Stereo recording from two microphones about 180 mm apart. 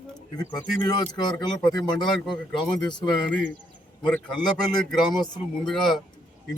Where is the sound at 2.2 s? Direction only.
5° left (ahead or behind).